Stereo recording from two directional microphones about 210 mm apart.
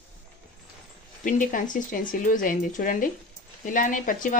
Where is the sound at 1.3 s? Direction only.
40° left (ahead or behind).